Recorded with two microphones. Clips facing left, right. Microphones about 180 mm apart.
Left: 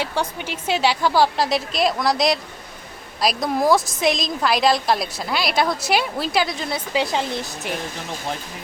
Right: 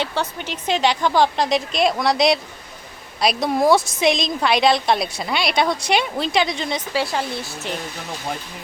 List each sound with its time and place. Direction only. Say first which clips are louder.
0.0 s a woman's voice: even; 10° left (ahead or behind)
6.9 s speech: left 3 dB; 20° left (ahead or behind)